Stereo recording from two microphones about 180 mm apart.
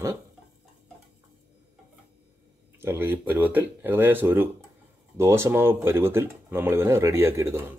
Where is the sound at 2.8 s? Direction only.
10° right (ahead or behind).